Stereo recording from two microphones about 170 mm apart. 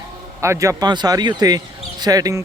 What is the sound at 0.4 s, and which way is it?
Speech, 15° right (ahead or behind).